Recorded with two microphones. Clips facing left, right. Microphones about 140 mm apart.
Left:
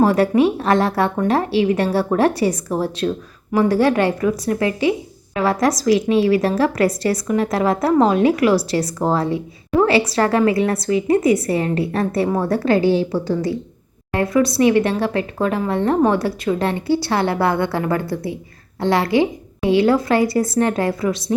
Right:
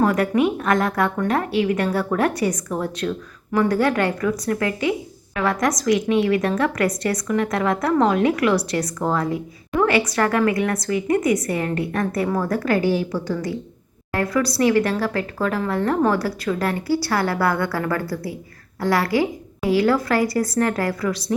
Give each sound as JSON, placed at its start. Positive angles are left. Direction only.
{"t": 0.0, "sound": "a woman's voice", "side_deg": 25}